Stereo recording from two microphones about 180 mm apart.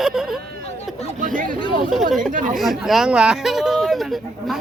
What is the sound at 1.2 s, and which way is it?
Speech, 50° right (ahead or behind).